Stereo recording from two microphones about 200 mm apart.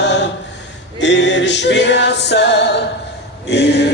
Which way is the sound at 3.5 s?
60° left (ahead or behind).